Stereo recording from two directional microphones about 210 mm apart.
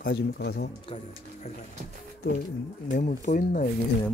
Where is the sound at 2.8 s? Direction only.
35° left (ahead or behind).